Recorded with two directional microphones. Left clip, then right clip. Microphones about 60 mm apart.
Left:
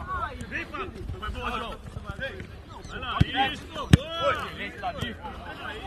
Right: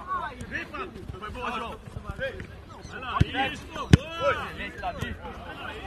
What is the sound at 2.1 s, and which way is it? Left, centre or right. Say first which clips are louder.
Speech: right 2 dB; centre.